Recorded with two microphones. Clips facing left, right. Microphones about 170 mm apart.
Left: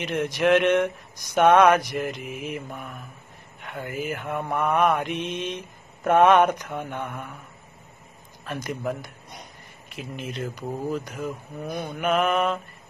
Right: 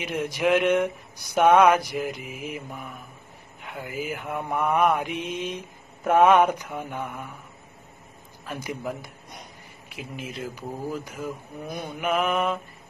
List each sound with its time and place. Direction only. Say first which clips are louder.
0.4 s mantra: left 2 dB; 10° right (ahead or behind)
2.3 s mantra: left 2 dB; 60° left (ahead or behind)
3.6 s mantra: left 2 dB; 10° right (ahead or behind)
5.1 s mantra: left 1 dB; 70° left (ahead or behind)
6.0 s mantra: left 1 dB; 10° right (ahead or behind)
8.5 s mantra: left 2 dB; 10° right (ahead or behind)
10.2 s speech: left 3 dB; 5° right (ahead or behind)
11.9 s mantra: left 2 dB; 10° right (ahead or behind)